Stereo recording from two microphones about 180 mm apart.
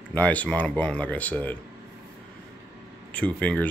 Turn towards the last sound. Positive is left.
turn(degrees=5)  # may be behind; listen again after turning